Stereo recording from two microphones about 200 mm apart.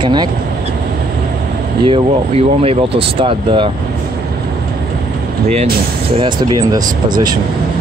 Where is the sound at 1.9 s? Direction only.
30° right (ahead or behind).